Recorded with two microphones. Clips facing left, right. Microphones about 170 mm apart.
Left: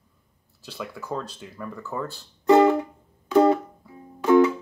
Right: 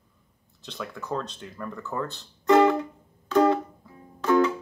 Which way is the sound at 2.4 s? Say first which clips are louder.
Left 2 dB; 20° left (ahead or behind).